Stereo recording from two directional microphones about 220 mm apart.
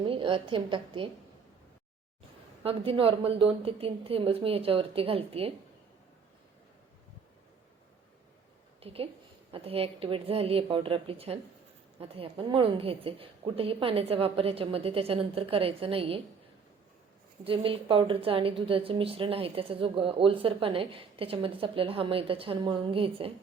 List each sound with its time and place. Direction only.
0.0 s a woman's voice: 25° right (ahead or behind)
2.6 s a woman's voice: 25° right (ahead or behind)
8.8 s a woman's voice: 25° right (ahead or behind)
17.4 s a woman's voice: 25° right (ahead or behind)